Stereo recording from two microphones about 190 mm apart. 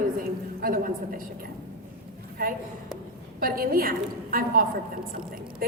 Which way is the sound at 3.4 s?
50° right (ahead or behind).